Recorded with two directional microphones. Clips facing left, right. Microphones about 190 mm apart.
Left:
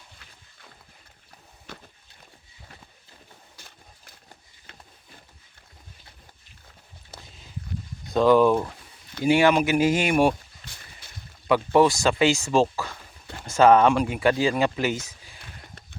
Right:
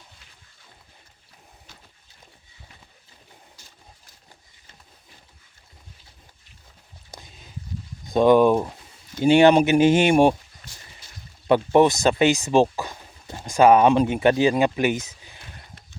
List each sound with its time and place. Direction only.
1.6 s boat: 65° left (ahead or behind)
3.6 s a sound: 60° left (ahead or behind)
8.1 s speech: 20° right (ahead or behind)
9.2 s speech: 25° right (ahead or behind)
10.7 s boat: 60° left (ahead or behind)
11.4 s speech: 25° right (ahead or behind)